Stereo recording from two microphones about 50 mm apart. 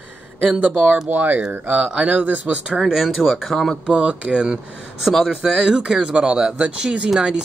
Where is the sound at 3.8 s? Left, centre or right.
Right.